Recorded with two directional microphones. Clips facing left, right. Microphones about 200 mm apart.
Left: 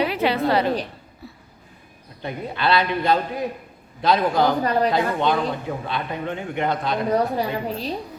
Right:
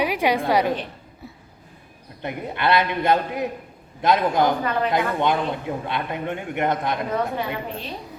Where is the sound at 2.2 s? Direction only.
20° right (ahead or behind).